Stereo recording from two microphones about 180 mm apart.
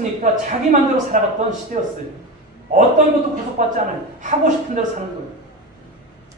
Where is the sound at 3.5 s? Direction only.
45° right (ahead or behind).